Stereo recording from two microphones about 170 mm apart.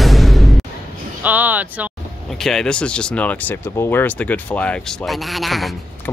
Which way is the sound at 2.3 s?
Centre (ahead or behind).